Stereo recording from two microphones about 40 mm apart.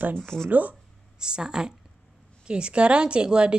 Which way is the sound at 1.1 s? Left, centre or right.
Centre.